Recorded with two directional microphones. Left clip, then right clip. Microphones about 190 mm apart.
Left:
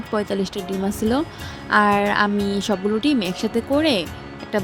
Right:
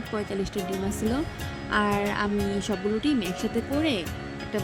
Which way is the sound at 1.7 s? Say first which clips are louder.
Left 9 dB; 15° left (ahead or behind).